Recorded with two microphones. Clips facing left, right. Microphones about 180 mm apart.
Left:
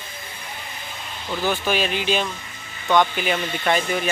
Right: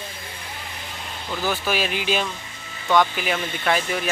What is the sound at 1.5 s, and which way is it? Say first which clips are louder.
Speech: left 2 dB; 5° right (ahead or behind).